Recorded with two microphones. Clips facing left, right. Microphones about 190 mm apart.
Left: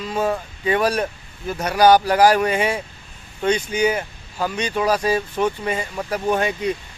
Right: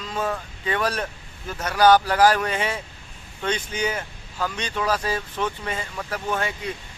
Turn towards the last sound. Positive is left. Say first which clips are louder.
# left 7 dB
turn(degrees=20)  # may be behind; listen again after turning